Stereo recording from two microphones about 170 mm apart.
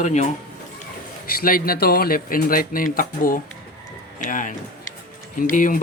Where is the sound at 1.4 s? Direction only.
60° left (ahead or behind).